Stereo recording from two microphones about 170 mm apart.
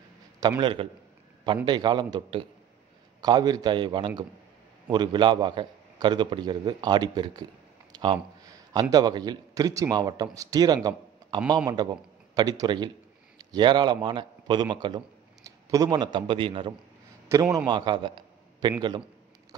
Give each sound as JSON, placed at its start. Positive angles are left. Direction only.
{"t": 0.4, "sound": "speech", "side_deg": -25}
{"t": 7.9, "sound": "a sound", "side_deg": -25}
{"t": 8.9, "sound": "a man's voice", "side_deg": -25}
{"t": 17.3, "sound": "speech", "side_deg": -20}